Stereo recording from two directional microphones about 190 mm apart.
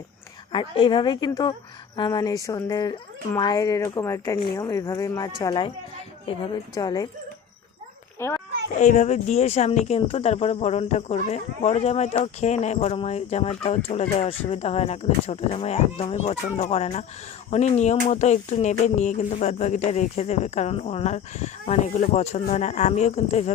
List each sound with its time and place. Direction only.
0.5 s speech: 25° left (ahead or behind)
8.2 s a child's voice: 10° left (ahead or behind)
8.8 s a sound: 40° left (ahead or behind)